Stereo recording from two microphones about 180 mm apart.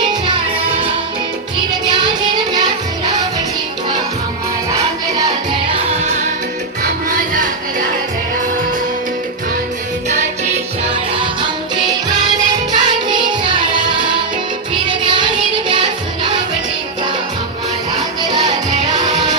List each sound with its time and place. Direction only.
0.3 s music: 30° right (ahead or behind)
4.7 s music: 20° right (ahead or behind)
5.7 s music: 35° right (ahead or behind)
11.1 s music: 30° right (ahead or behind)
12.7 s music: 25° right (ahead or behind)
14.8 s music: 25° right (ahead or behind)